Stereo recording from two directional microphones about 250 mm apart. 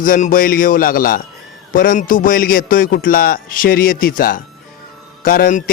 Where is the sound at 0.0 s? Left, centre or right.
Left.